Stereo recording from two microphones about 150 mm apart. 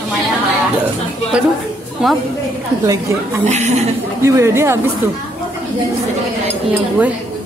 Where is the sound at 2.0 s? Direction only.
Centre (ahead or behind).